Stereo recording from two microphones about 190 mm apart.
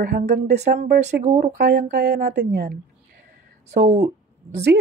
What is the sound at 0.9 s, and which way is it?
Speech, 40° right (ahead or behind).